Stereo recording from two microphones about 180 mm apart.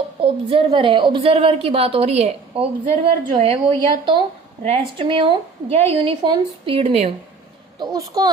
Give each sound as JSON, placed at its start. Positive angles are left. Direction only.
{"t": 0.2, "sound": "a woman's voice", "side_deg": -30}
{"t": 7.8, "sound": "a woman's voice", "side_deg": -20}